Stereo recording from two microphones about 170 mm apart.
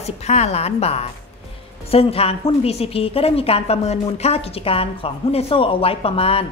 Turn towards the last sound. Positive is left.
turn(degrees=35)  # may be behind; listen again after turning